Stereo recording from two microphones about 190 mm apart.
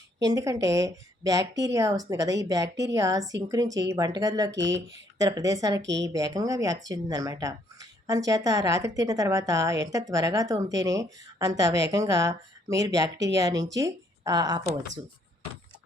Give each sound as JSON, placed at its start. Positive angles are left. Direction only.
{"t": 0.3, "sound": "a woman's voice", "side_deg": -20}
{"t": 5.8, "sound": "a woman's voice", "side_deg": -70}
{"t": 6.1, "sound": "a woman's voice", "side_deg": -20}